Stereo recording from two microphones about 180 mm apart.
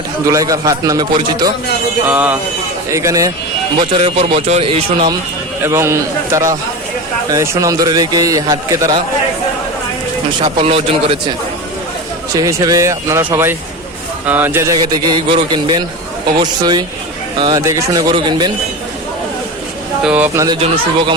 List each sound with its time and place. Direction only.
0.3 s a man's voice: 20° right (ahead or behind)
2.0 s a man's voice: 10° right (ahead or behind)
3.9 s speech: 30° right (ahead or behind)
5.6 s a man's voice: 15° right (ahead or behind)
10.4 s speech: 30° right (ahead or behind)
12.3 s a man's voice: 20° right (ahead or behind)
20.1 s speech: 10° right (ahead or behind)